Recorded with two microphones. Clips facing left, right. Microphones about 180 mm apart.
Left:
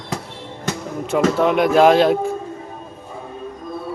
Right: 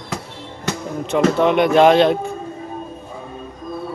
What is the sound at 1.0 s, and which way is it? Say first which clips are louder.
Speech: right 1 dB; 5° left (ahead or behind).